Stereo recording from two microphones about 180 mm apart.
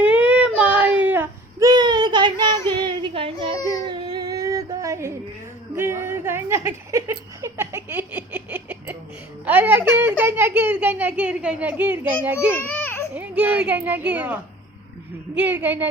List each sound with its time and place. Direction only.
0.0 s child singing: 5° right (ahead or behind); by 3.6 s 30° right (ahead or behind)
3.8 s a sound: 20° right (ahead or behind)
9.5 s a child's voice: 10° right (ahead or behind)
12.6 s babbling: 10° left (ahead or behind)
13.1 s speech: 10° right (ahead or behind)
15.4 s a child's voice: 10° right (ahead or behind)